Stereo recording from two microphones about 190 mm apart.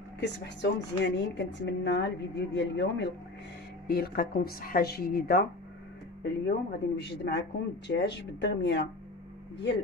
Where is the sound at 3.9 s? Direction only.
55° left (ahead or behind).